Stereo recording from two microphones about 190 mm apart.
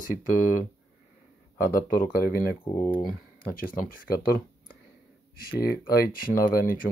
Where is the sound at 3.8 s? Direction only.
50° left (ahead or behind).